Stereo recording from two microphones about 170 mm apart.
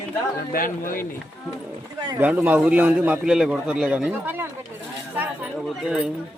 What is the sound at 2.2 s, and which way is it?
A man's voice, 10° right (ahead or behind).